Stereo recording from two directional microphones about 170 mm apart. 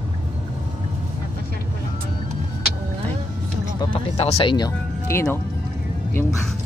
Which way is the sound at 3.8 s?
30° left (ahead or behind).